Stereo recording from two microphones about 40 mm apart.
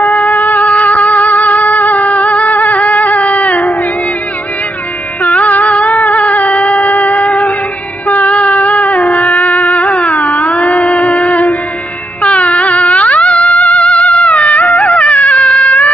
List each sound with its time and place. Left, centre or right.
0.0 s music: left
5.2 s a sound: left
8.1 s music: left